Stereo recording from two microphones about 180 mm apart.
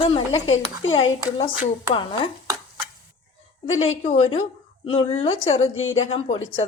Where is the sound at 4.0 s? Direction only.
30° left (ahead or behind).